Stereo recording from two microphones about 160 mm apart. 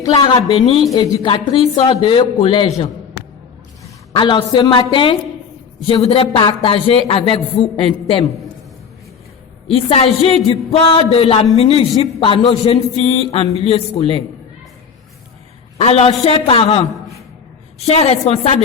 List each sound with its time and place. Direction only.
0.0 s a woman's voice: 25° left (ahead or behind)
4.1 s a woman's voice: 30° left (ahead or behind)
9.6 s speech: 35° left (ahead or behind)
15.8 s speech: 40° left (ahead or behind)